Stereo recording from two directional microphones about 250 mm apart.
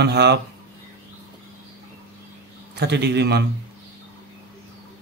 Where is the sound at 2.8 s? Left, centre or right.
Right.